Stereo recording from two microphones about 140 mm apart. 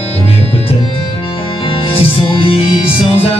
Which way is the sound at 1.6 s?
40° left (ahead or behind).